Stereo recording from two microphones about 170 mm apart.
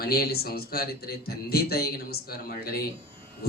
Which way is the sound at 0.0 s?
65° left (ahead or behind).